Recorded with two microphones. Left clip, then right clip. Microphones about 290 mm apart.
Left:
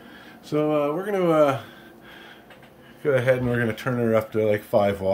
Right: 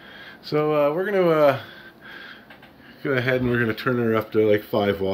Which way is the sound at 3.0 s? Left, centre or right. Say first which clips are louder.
Left 2 dB; centre.